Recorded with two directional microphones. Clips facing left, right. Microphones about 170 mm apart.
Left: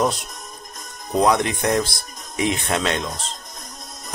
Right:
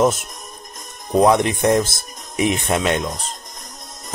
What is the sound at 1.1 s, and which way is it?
Speech, 20° right (ahead or behind).